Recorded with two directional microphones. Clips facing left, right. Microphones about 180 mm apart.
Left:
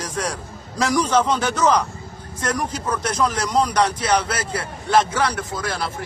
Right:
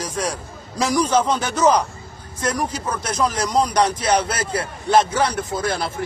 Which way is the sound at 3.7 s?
25° right (ahead or behind).